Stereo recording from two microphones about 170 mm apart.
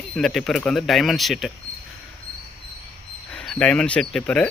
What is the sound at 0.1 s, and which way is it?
Speech, centre (ahead or behind).